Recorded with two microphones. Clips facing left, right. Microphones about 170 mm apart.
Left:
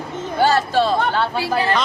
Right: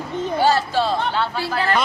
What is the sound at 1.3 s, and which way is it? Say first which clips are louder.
Speech: left 3 dB; 15° left (ahead or behind).